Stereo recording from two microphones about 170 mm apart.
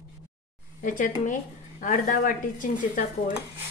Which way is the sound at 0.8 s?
50° left (ahead or behind).